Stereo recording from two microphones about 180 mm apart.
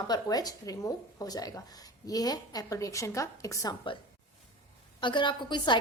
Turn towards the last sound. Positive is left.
turn(degrees=25)  # may be behind; listen again after turning